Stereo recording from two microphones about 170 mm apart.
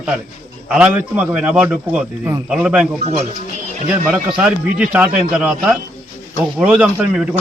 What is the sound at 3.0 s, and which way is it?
Speech, 40° right (ahead or behind).